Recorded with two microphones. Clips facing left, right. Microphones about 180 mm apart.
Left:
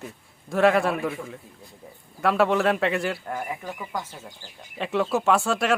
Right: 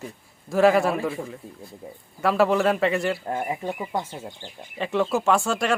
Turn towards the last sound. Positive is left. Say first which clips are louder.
# even
turn(degrees=0)  # may be behind; listen again after turning